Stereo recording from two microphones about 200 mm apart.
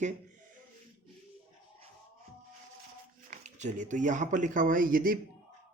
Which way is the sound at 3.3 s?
35° right (ahead or behind).